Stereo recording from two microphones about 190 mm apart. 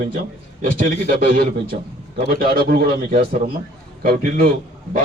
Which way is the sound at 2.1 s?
50° right (ahead or behind).